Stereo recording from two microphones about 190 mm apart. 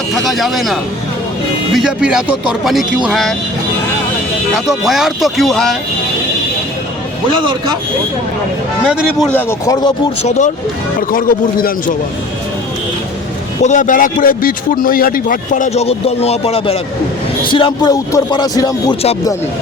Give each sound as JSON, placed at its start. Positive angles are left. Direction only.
{"t": 0.1, "sound": "speech", "side_deg": 0}
{"t": 4.5, "sound": "speech", "side_deg": 0}
{"t": 9.3, "sound": "speech", "side_deg": 15}
{"t": 10.2, "sound": "a man's voice", "side_deg": 40}
{"t": 13.6, "sound": "a man's voice", "side_deg": 40}